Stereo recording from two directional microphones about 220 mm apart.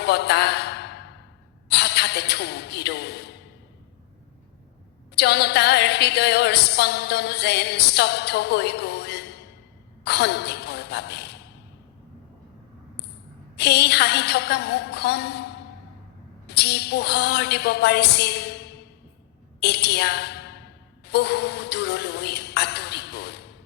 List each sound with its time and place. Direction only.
0.0 s a sound: 50° left (ahead or behind)
1.6 s a woman's voice: 50° left (ahead or behind)
5.1 s a woman's voice: 50° left (ahead or behind)
13.6 s a woman's voice: 50° left (ahead or behind)
16.5 s a woman's voice: 50° left (ahead or behind)